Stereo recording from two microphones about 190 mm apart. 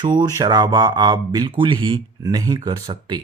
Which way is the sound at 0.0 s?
20° right (ahead or behind).